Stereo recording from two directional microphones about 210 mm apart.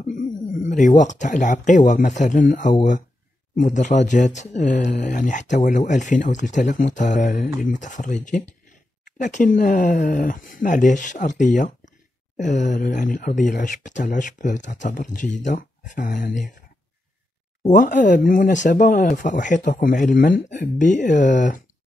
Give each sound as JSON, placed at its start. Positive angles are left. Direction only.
{"t": 0.0, "sound": "speech", "side_deg": 35}
{"t": 17.6, "sound": "speech", "side_deg": 35}